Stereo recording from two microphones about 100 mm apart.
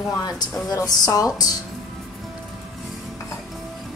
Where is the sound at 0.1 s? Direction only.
40° left (ahead or behind).